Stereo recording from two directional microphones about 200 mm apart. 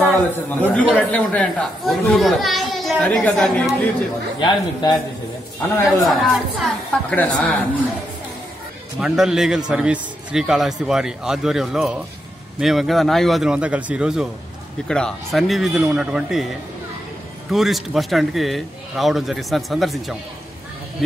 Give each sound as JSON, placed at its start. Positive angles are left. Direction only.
{"t": 0.6, "sound": "speech", "side_deg": 5}
{"t": 4.4, "sound": "speech", "side_deg": 20}
{"t": 5.9, "sound": "speech", "side_deg": 0}
{"t": 9.0, "sound": "speech", "side_deg": 0}